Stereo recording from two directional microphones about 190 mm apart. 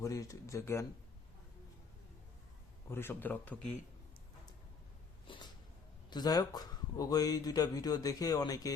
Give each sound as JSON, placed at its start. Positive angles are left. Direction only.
{"t": 0.0, "sound": "speech", "side_deg": 15}
{"t": 2.9, "sound": "speech", "side_deg": 10}
{"t": 6.1, "sound": "speech", "side_deg": 20}